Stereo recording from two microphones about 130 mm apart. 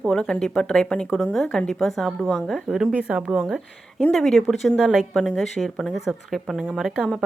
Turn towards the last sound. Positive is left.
turn(degrees=5)  # may be behind; listen again after turning